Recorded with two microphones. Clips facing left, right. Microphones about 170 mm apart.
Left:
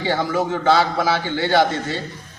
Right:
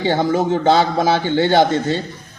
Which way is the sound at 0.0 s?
25° right (ahead or behind).